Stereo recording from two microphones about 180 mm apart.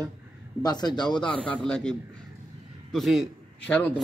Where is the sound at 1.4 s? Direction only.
5° left (ahead or behind).